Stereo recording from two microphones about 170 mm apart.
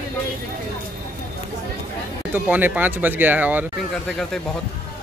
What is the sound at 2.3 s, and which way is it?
Speech, 10° right (ahead or behind).